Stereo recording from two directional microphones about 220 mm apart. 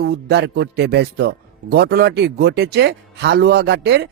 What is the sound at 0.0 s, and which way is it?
Speech, 50° right (ahead or behind).